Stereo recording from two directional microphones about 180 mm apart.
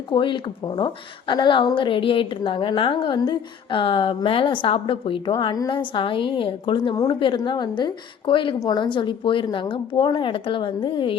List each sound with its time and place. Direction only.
0.1 s a woman's voice: 25° left (ahead or behind)